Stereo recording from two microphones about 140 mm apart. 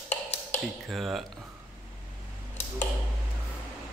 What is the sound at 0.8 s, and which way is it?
Speech, centre (ahead or behind).